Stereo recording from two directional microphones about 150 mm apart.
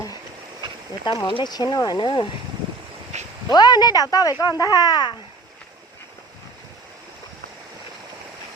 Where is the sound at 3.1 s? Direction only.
50° right (ahead or behind).